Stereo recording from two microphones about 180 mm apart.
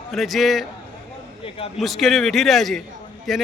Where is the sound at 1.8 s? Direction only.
Centre (ahead or behind).